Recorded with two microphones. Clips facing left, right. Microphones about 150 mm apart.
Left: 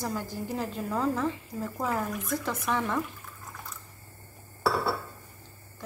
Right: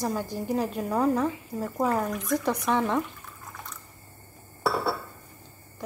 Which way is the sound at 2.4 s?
15° right (ahead or behind).